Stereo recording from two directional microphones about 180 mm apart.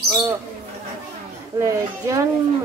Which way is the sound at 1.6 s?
15° right (ahead or behind).